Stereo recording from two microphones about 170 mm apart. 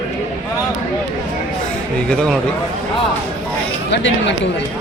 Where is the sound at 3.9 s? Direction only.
90° left.